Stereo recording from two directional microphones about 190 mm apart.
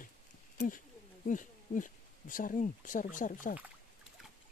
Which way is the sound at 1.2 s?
40° left (ahead or behind).